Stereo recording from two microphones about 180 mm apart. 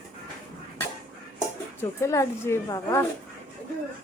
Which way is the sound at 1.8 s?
15° left (ahead or behind).